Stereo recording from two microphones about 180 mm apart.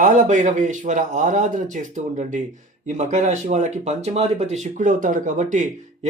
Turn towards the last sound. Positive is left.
turn(degrees=-45)  # may be behind; listen again after turning